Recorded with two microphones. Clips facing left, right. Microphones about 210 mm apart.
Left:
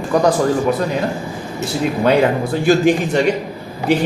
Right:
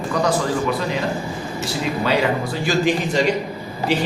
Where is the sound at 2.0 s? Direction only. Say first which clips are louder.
Left 6 dB; 55° left (ahead or behind).